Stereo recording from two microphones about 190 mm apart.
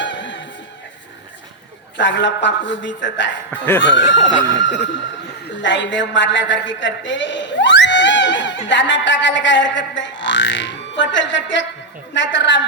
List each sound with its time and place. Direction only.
0.0 s music: 70° left (ahead or behind)
2.0 s a man's voice: 70° left (ahead or behind)
3.5 s speech: 10° left (ahead or behind)
4.2 s speech: 30° left (ahead or behind)
5.6 s a man's voice: 70° left (ahead or behind)